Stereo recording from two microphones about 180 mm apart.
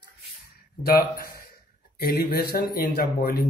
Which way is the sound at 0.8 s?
55° left (ahead or behind).